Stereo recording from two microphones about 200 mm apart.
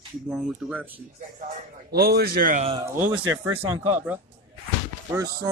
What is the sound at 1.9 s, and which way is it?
Speech, 50° right (ahead or behind).